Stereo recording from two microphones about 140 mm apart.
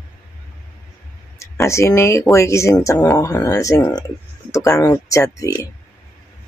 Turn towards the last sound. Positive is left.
turn(degrees=25)  # may be behind; listen again after turning